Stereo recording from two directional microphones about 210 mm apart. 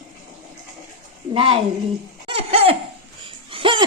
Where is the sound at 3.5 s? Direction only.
25° right (ahead or behind).